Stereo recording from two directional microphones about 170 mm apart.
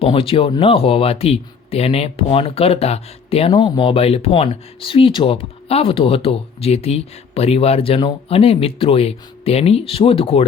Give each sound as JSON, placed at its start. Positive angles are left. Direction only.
{"t": 0.0, "sound": "speech", "side_deg": 35}